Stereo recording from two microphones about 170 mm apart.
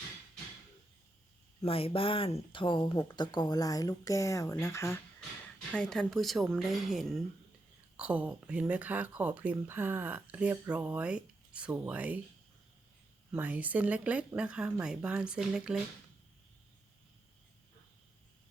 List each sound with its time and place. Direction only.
1.6 s speech: 35° left (ahead or behind); by 4.9 s 15° left (ahead or behind)
5.7 s speech: 5° left (ahead or behind)
13.3 s speech: 10° right (ahead or behind)